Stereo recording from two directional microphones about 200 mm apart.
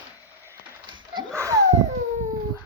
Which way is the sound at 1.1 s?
15° right (ahead or behind).